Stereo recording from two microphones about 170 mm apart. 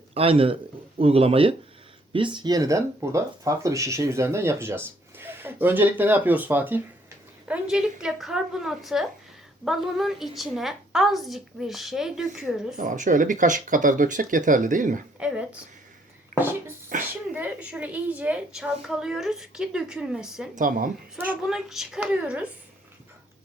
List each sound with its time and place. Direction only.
0.1 s a man's voice: 35° right (ahead or behind); by 12.7 s centre (ahead or behind)
12.7 s speech: 50° right (ahead or behind)
16.4 s a sound: 15° right (ahead or behind)
17.1 s a woman's voice: 10° right (ahead or behind)
20.6 s a woman's voice: 55° right (ahead or behind)
21.2 s a woman's voice: 5° right (ahead or behind)